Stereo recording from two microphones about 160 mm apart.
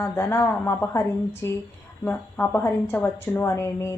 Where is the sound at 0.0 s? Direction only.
15° left (ahead or behind).